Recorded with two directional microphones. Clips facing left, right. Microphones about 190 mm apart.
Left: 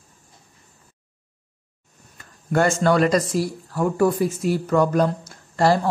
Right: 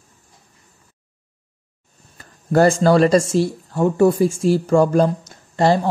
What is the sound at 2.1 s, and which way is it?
Speech, 35° right (ahead or behind).